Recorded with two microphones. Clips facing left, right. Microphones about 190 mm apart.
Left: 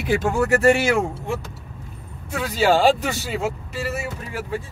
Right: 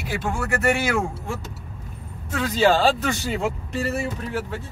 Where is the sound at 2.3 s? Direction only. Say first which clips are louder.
Even; 10° left (ahead or behind).